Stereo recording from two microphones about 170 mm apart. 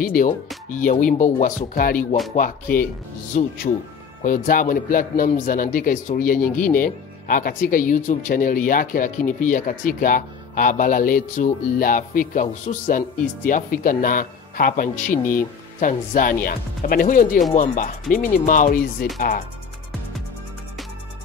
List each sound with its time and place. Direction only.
0.0 s a man's voice: 55° left (ahead or behind)